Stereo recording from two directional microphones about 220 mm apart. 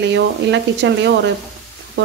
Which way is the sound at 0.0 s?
50° right (ahead or behind).